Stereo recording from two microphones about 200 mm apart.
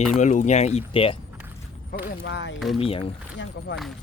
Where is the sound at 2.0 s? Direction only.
60° left (ahead or behind).